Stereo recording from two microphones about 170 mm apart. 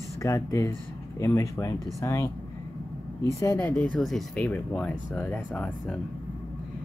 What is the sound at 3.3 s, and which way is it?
Speech, 20° left (ahead or behind).